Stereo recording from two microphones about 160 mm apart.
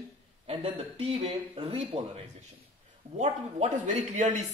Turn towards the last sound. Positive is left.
turn(degrees=-50)  # may be behind; listen again after turning